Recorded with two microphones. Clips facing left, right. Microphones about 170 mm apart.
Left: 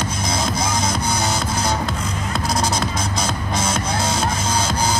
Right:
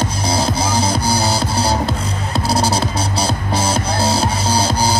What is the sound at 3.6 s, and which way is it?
Music, 35° right (ahead or behind).